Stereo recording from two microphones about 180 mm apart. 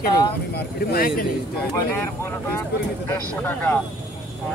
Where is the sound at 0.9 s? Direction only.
55° left (ahead or behind).